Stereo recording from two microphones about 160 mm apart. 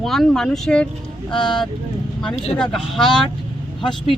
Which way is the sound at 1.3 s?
30° left (ahead or behind).